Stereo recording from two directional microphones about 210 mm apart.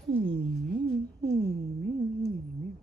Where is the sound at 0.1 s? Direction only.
60° right (ahead or behind).